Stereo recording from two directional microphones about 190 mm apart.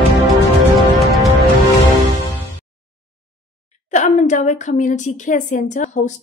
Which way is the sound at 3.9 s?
40° left (ahead or behind).